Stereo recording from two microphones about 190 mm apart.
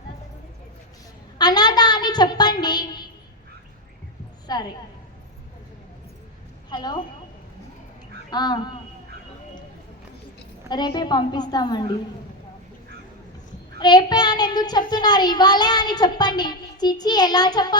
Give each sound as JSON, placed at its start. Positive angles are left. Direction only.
{"t": 1.4, "sound": "a woman's voice", "side_deg": 20}
{"t": 4.4, "sound": "a sound", "side_deg": 20}
{"t": 6.7, "sound": "a woman's voice", "side_deg": 20}
{"t": 8.3, "sound": "a child's voice", "side_deg": 20}
{"t": 10.7, "sound": "a child's voice", "side_deg": 20}
{"t": 13.7, "sound": "a child's voice", "side_deg": 20}